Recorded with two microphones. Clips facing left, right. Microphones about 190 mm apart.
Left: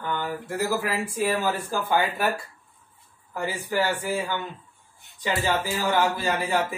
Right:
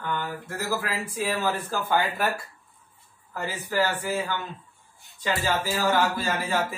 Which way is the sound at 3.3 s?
10° left (ahead or behind).